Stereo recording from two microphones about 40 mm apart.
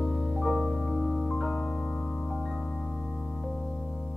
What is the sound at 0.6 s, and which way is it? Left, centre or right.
Music, centre.